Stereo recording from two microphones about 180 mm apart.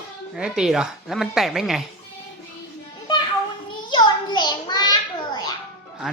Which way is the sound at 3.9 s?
25° left (ahead or behind).